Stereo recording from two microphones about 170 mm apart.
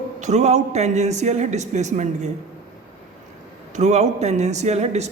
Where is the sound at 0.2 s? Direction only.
45° right (ahead or behind).